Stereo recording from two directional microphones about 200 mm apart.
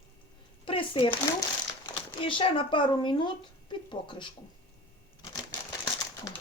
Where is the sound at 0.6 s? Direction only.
25° left (ahead or behind).